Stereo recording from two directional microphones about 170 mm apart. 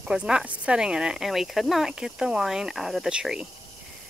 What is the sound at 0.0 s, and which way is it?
Speech, 5° right (ahead or behind).